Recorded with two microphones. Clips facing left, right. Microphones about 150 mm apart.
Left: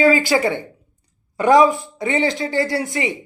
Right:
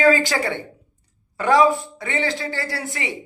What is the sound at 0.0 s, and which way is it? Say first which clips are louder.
Speech: left 2 dB; 10° left (ahead or behind).